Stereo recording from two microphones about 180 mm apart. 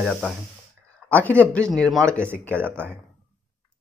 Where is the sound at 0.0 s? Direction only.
Centre (ahead or behind).